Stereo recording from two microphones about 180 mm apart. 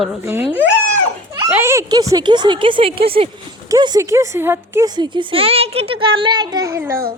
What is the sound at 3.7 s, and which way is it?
A woman's voice, 20° right (ahead or behind).